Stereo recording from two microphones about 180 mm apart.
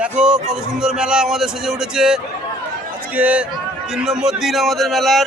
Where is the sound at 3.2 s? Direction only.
5° right (ahead or behind).